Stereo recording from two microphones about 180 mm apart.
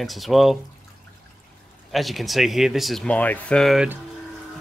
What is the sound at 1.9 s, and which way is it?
Speech, centre (ahead or behind).